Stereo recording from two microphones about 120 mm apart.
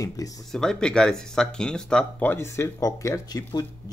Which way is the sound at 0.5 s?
5° left (ahead or behind).